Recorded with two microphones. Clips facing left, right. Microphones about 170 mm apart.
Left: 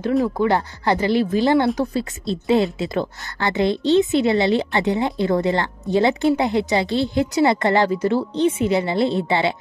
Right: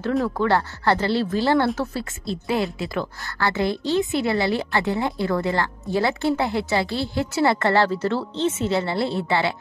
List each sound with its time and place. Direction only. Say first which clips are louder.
0.2 s a woman's voice: left 2 dB; 15° left (ahead or behind)